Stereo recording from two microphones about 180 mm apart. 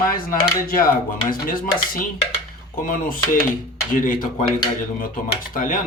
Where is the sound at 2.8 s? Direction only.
50° left (ahead or behind).